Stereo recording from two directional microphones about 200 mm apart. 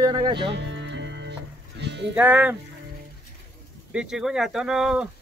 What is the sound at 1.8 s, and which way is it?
Sheep, 60° right (ahead or behind).